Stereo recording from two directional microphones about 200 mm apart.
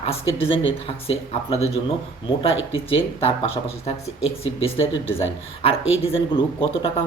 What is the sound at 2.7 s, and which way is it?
Speech, 25° left (ahead or behind).